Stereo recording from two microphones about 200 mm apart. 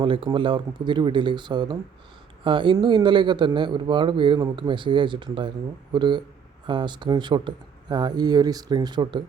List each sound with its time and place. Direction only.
0.0 s speech: 25° right (ahead or behind)